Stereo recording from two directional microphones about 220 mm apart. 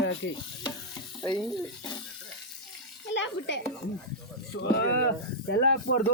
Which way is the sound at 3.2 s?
55° left (ahead or behind).